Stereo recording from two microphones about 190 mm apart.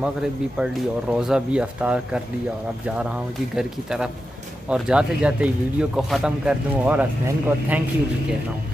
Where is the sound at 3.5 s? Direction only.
5° right (ahead or behind).